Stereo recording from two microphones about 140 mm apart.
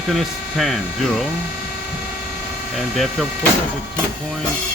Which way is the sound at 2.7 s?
Centre (ahead or behind).